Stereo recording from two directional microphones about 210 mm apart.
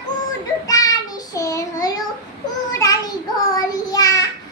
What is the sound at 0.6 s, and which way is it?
Child singing, 15° left (ahead or behind).